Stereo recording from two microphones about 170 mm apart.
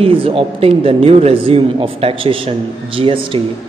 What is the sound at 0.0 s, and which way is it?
A man's voice, 30° right (ahead or behind).